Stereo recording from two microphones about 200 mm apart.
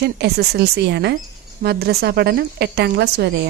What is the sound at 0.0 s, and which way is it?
Speech, 55° right (ahead or behind).